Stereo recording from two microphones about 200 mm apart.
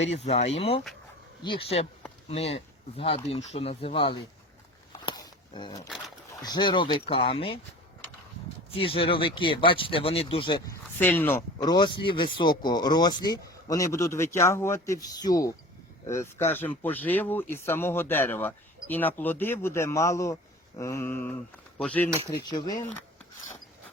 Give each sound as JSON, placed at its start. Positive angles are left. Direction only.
{"t": 0.1, "sound": "speech", "side_deg": 30}
{"t": 4.9, "sound": "a sound", "side_deg": 20}
{"t": 6.4, "sound": "speech", "side_deg": 20}
{"t": 8.7, "sound": "speech", "side_deg": 25}
{"t": 10.9, "sound": "speech", "side_deg": 10}
{"t": 22.3, "sound": "speech", "side_deg": 20}